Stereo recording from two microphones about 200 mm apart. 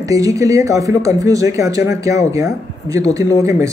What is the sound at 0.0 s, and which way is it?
Speech, 15° right (ahead or behind).